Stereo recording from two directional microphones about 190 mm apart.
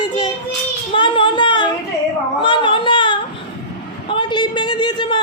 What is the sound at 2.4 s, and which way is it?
Child singing, 25° left (ahead or behind).